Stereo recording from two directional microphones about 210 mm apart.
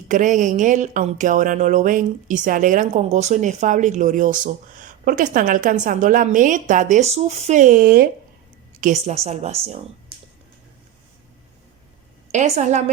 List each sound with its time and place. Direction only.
0.1 s speech: 35° right (ahead or behind)
12.3 s speech: 35° right (ahead or behind)